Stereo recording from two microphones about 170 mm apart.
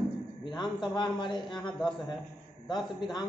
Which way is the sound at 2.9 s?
25° left (ahead or behind).